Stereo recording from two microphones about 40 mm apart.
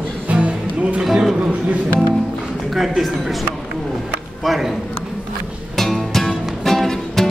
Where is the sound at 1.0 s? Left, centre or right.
Centre.